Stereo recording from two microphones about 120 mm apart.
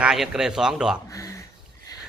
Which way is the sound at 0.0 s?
5° right (ahead or behind).